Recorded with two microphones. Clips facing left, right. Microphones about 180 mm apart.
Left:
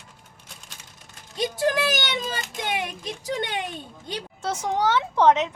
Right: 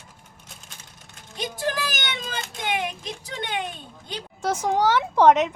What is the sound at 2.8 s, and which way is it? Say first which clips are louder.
Speech: left 1 dB; 45° left (ahead or behind).